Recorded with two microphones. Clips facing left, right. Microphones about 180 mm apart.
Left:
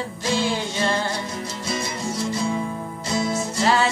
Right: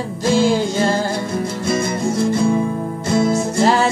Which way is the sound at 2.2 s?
55° right (ahead or behind).